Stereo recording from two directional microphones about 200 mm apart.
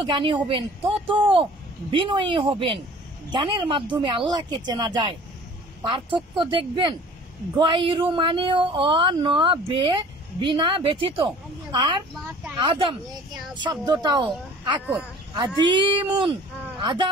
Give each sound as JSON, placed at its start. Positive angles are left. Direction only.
{"t": 0.0, "sound": "a woman's voice", "side_deg": -25}